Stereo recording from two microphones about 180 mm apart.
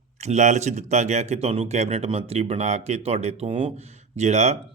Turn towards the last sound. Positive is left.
turn(degrees=-40)  # may be behind; listen again after turning